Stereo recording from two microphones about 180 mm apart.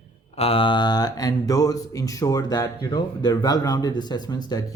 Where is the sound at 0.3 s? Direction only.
30° left (ahead or behind).